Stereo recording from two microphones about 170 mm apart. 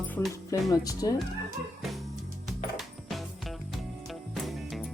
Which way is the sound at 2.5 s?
Centre (ahead or behind).